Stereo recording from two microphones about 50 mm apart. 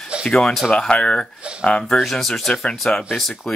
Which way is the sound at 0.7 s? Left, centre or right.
Centre.